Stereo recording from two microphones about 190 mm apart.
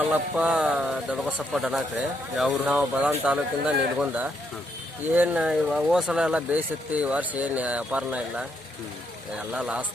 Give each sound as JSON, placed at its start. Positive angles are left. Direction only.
{"t": 0.1, "sound": "a man's voice", "side_deg": -5}
{"t": 9.5, "sound": "speech", "side_deg": -5}